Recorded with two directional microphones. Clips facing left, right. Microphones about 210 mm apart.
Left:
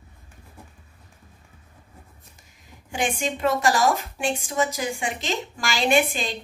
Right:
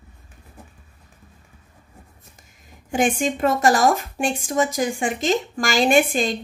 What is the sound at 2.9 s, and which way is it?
A woman's voice, 50° right (ahead or behind).